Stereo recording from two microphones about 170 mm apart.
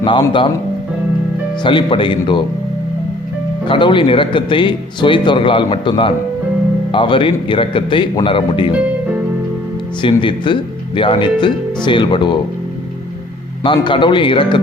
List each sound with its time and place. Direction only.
0.0 s speech: 30° left (ahead or behind)
1.6 s speech: 30° left (ahead or behind)
3.7 s speech: 30° left (ahead or behind)
10.0 s speech: 30° left (ahead or behind)
13.6 s speech: 30° left (ahead or behind)